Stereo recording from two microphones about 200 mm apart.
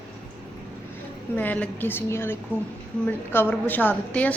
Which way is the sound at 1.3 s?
10° left (ahead or behind).